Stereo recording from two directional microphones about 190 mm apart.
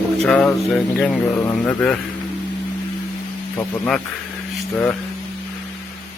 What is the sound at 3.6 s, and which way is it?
Speech, 5° left (ahead or behind).